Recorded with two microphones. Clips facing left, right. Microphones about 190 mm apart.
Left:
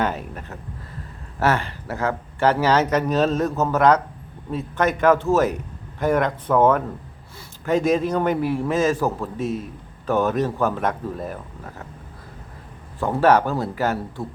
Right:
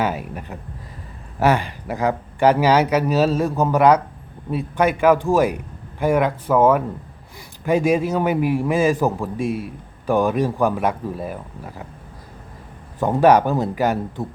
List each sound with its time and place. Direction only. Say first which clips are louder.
0.0 s a man's voice: right 1 dB; 10° right (ahead or behind)
13.0 s a man's voice: right 3 dB; 15° right (ahead or behind)